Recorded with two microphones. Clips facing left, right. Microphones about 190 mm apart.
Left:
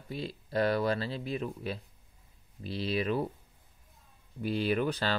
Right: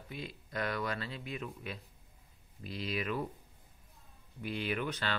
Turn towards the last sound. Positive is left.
turn(degrees=35)  # may be behind; listen again after turning